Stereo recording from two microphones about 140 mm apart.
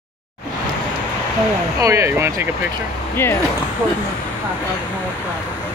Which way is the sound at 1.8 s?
20° right (ahead or behind).